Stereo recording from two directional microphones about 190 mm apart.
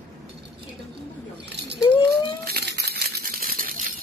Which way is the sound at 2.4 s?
55° right (ahead or behind).